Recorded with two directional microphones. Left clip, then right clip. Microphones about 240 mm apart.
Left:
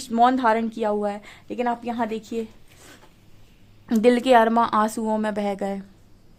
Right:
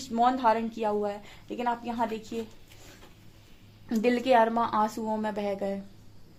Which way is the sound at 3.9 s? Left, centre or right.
Left.